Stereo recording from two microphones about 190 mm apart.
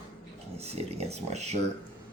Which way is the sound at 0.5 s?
35° right (ahead or behind).